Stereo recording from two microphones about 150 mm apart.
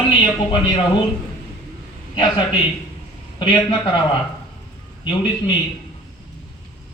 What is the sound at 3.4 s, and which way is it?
Speech, 35° left (ahead or behind).